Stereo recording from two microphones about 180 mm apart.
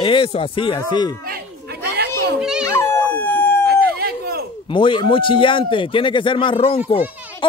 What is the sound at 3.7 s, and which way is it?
Howl, 60° right (ahead or behind).